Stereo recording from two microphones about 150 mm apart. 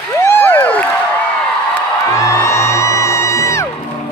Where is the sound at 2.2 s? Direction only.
20° left (ahead or behind).